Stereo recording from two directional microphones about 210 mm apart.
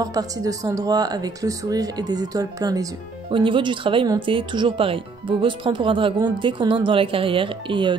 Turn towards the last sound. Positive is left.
turn(degrees=-25)  # may be behind; listen again after turning